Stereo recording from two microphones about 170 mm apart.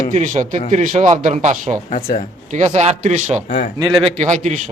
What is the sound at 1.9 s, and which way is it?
Speech, 45° left (ahead or behind).